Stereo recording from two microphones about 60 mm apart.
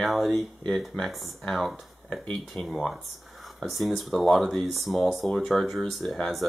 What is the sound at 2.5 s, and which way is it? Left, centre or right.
Speech, left.